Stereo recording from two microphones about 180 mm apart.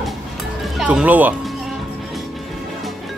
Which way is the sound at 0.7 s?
5° right (ahead or behind).